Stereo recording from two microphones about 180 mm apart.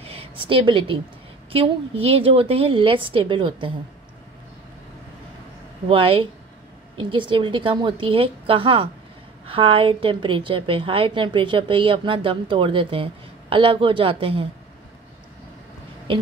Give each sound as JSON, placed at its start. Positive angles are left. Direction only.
{"t": 0.0, "sound": "a sound", "side_deg": -35}
{"t": 1.5, "sound": "a woman's voice", "side_deg": -30}
{"t": 5.9, "sound": "a woman's voice", "side_deg": -30}